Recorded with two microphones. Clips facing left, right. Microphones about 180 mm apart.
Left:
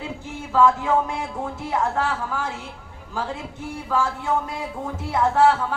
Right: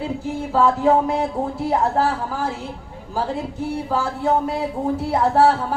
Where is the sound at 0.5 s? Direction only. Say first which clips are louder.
Right 2 dB; 35° right (ahead or behind).